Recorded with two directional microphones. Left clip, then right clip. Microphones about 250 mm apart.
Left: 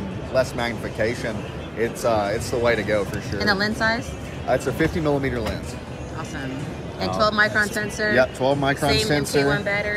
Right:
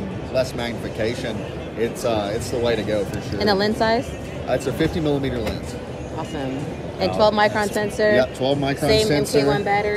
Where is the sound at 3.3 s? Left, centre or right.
Left.